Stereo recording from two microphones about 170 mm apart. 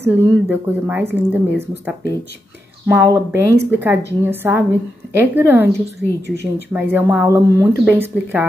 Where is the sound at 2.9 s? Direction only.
15° right (ahead or behind).